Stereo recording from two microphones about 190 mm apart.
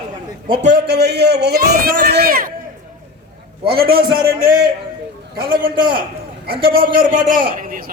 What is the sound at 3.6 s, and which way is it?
Speech, 55° right (ahead or behind).